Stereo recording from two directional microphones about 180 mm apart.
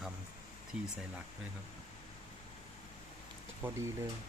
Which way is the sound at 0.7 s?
5° right (ahead or behind).